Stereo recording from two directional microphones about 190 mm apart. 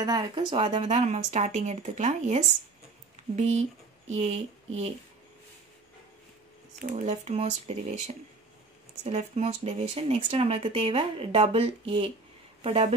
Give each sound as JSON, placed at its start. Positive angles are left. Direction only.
{"t": 0.0, "sound": "speech", "side_deg": -20}
{"t": 6.8, "sound": "speech", "side_deg": -40}